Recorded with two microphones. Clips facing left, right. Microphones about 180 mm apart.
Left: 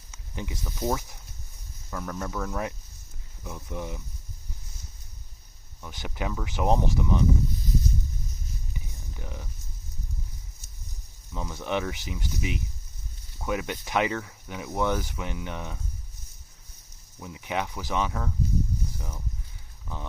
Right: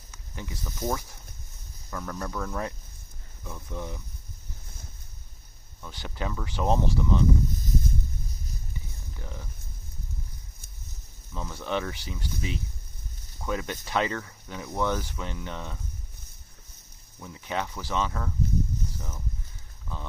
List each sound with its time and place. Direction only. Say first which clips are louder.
0.1 s speech: left 3 dB; 20° left (ahead or behind); by 2.6 s centre (ahead or behind)
3.4 s speech: left 2 dB; 15° left (ahead or behind)
5.8 s speech: left 1 dB; 15° left (ahead or behind)
7.5 s a sound: even; 50° right (ahead or behind)
8.7 s a sound: left 1 dB; 15° left (ahead or behind)
11.3 s speech: left 1 dB; 15° left (ahead or behind)
17.2 s speech: left 1 dB; 15° left (ahead or behind)